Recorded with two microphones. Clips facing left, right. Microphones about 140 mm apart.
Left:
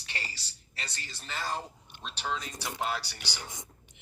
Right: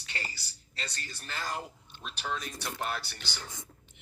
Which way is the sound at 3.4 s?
15° left (ahead or behind).